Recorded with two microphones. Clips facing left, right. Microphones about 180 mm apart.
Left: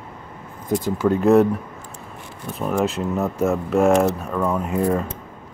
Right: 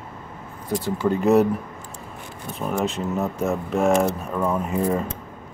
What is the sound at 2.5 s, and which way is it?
Speech, centre (ahead or behind).